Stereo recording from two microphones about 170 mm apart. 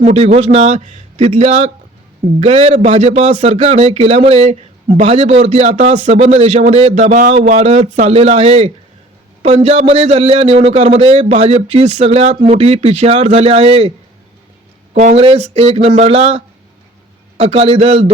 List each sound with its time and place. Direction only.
0.0 s a man's voice: 40° right (ahead or behind)
14.9 s a man's voice: 40° right (ahead or behind)